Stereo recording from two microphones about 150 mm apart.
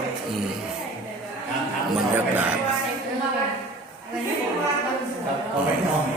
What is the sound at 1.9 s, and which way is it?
Speech, 10° right (ahead or behind).